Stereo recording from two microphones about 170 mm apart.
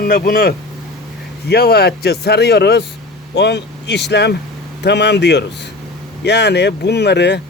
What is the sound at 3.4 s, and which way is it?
Speech, 90° left.